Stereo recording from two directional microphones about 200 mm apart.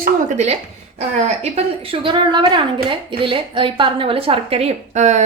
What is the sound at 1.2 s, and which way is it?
A woman's voice, 35° right (ahead or behind).